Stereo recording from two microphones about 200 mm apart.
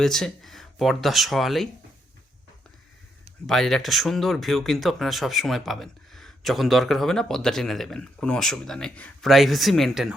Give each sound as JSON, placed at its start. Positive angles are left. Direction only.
{"t": 0.0, "sound": "speech", "side_deg": 0}
{"t": 3.4, "sound": "speech", "side_deg": 0}